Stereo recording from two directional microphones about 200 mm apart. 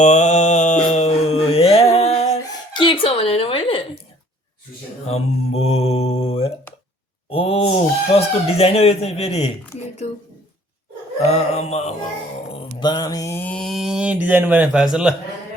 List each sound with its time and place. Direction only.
0.0 s mantra: 35° left (ahead or behind)
5.0 s speech: 30° left (ahead or behind)
11.3 s speech: 30° left (ahead or behind)
12.8 s mantra: 20° left (ahead or behind); by 15.1 s 5° right (ahead or behind)